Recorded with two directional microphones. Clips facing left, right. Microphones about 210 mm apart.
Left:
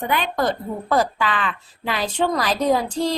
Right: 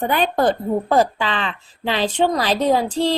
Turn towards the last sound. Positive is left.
turn(degrees=-20)  # may be behind; listen again after turning